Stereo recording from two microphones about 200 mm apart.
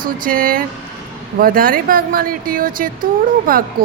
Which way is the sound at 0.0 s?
45° right (ahead or behind).